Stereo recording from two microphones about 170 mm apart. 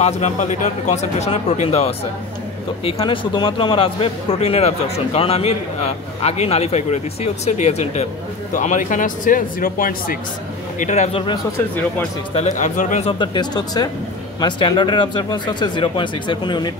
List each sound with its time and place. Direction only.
0.0 s a man's voice: 45° left (ahead or behind)
10.8 s a man's voice: 40° left (ahead or behind)
11.5 s speech: 10° left (ahead or behind)
12.4 s speech: 45° left (ahead or behind)
13.2 s speech: 25° left (ahead or behind)